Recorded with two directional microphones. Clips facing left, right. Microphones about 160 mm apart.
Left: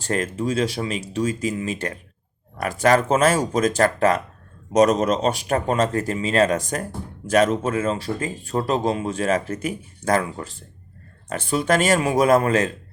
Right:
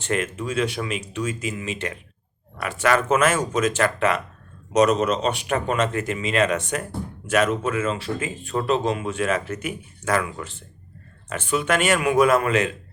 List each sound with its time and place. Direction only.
0.0 s speech: 35° left (ahead or behind)